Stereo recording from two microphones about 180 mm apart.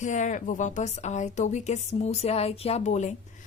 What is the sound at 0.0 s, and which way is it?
A woman's voice, 45° left (ahead or behind).